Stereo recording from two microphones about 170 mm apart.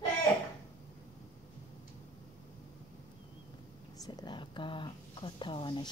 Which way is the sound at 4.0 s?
25° left (ahead or behind).